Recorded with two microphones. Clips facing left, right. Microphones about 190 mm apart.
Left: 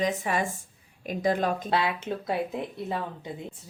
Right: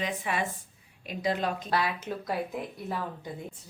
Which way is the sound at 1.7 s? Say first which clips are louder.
Left 2 dB; 25° left (ahead or behind).